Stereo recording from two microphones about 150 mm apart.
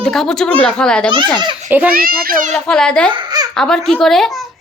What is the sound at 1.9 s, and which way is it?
Speech, 75° right (ahead or behind).